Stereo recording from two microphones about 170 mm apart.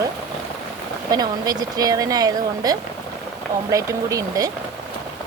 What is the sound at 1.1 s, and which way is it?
Speech, 20° right (ahead or behind).